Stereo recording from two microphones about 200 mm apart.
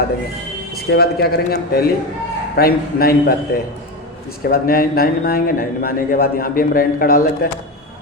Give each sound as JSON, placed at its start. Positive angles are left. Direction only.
{"t": 0.8, "sound": "a man's voice", "side_deg": 50}